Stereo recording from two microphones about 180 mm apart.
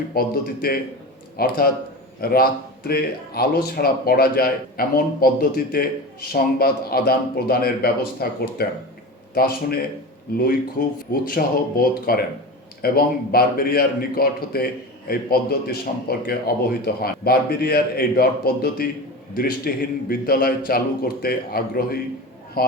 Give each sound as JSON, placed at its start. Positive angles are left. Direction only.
{"t": 0.1, "sound": "speech", "side_deg": 55}